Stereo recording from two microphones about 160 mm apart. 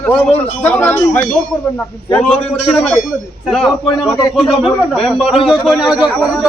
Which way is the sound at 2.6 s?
5° left (ahead or behind).